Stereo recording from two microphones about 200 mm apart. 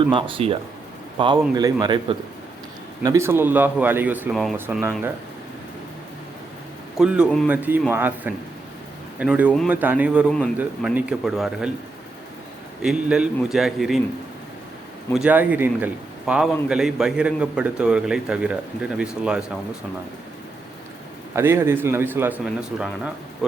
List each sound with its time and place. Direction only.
0.1 s speech: 25° right (ahead or behind); by 5.1 s 10° right (ahead or behind)
6.9 s a man's voice: 5° right (ahead or behind)
10.2 s a man's voice: 5° left (ahead or behind)
10.6 s a man's voice: 10° right (ahead or behind)
12.8 s a man's voice: 5° right (ahead or behind)
15.1 s a man's voice: 5° right (ahead or behind)
21.3 s a man's voice: 15° right (ahead or behind)